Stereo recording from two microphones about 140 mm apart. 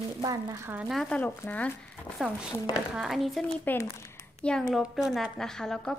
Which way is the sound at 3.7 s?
15° left (ahead or behind).